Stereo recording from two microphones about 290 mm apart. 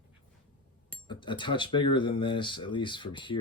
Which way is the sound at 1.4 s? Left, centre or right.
Centre.